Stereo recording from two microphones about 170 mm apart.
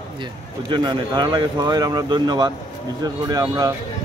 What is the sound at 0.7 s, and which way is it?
Speech, 25° right (ahead or behind).